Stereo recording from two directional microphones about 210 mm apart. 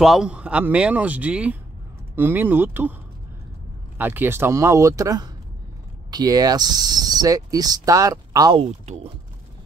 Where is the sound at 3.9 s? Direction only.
10° right (ahead or behind).